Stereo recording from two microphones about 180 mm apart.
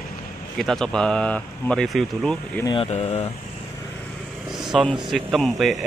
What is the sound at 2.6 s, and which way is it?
Speech, 25° left (ahead or behind).